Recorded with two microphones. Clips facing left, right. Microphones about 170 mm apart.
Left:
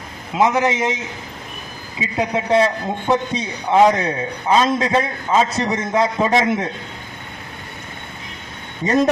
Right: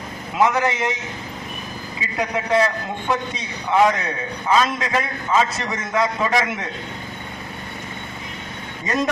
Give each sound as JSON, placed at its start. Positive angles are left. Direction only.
{"t": 0.3, "sound": "a man's voice", "side_deg": 20}
{"t": 2.0, "sound": "a man's voice", "side_deg": 25}